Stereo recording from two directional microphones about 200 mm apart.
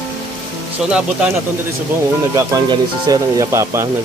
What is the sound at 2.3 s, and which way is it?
Speech, 15° right (ahead or behind).